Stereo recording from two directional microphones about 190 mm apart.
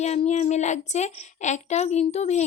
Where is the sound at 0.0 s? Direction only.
35° left (ahead or behind).